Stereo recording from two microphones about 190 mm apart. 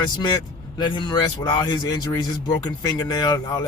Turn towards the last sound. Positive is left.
turn(degrees=20)  # may be behind; listen again after turning